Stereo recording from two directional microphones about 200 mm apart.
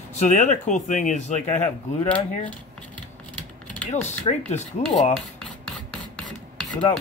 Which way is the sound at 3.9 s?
35° left (ahead or behind).